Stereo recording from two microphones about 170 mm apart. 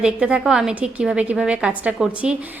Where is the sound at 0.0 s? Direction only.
5° right (ahead or behind).